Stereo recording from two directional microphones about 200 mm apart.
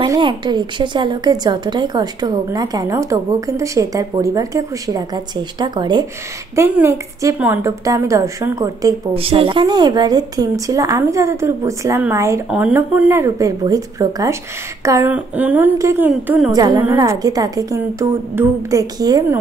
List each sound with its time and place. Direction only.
0.0 s a woman's voice: 20° right (ahead or behind)
9.1 s a woman's voice: 30° right (ahead or behind); by 16.5 s 10° right (ahead or behind)
16.5 s a woman's voice: 20° right (ahead or behind)